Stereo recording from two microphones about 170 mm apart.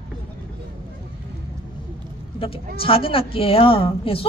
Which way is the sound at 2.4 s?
30° left (ahead or behind).